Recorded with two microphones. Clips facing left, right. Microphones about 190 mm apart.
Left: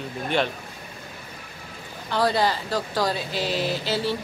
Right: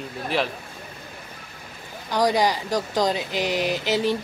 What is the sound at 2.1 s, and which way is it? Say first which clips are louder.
Speech: right 2 dB; 15° right (ahead or behind).